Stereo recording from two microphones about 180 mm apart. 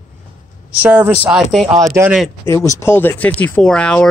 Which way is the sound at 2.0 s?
Centre (ahead or behind).